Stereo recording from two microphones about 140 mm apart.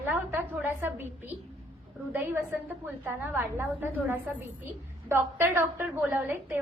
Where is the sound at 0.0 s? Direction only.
15° right (ahead or behind).